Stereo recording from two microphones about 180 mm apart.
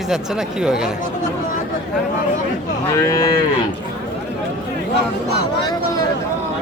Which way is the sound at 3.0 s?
20° left (ahead or behind).